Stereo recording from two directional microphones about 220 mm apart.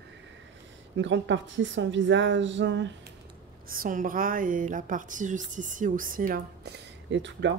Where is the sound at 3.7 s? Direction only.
40° right (ahead or behind).